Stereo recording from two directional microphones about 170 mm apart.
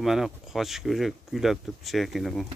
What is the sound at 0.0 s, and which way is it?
Speech, centre (ahead or behind).